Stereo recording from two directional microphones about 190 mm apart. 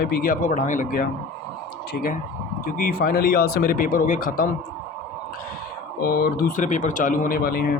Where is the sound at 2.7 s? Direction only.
50° left (ahead or behind).